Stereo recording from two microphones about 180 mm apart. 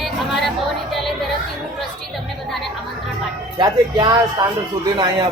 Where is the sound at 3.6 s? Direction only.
25° right (ahead or behind).